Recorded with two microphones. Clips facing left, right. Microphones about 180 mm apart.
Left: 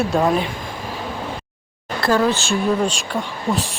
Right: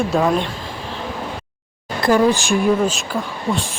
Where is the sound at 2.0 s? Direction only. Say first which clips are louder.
Right 3 dB; 15° right (ahead or behind).